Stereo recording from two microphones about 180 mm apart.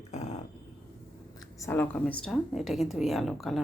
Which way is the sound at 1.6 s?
10° left (ahead or behind).